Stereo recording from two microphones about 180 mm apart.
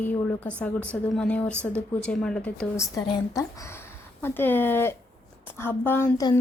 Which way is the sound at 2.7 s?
15° left (ahead or behind).